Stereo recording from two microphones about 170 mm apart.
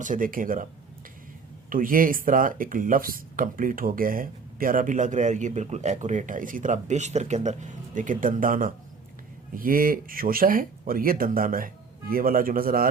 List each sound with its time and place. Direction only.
0.0 s speech: 50° right (ahead or behind)
1.7 s speech: 55° right (ahead or behind)